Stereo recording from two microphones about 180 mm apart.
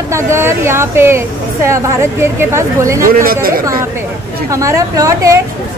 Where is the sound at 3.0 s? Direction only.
55° right (ahead or behind).